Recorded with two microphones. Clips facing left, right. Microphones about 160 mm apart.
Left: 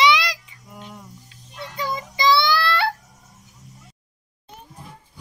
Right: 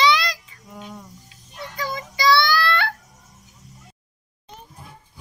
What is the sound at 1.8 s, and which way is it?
Child singing, 25° left (ahead or behind).